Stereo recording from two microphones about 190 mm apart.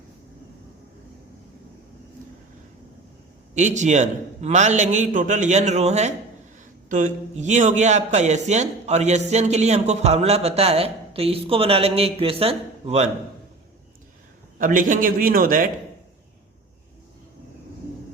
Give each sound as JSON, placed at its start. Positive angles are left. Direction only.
{"t": 3.5, "sound": "a man's voice", "side_deg": -40}
{"t": 14.6, "sound": "a man's voice", "side_deg": -45}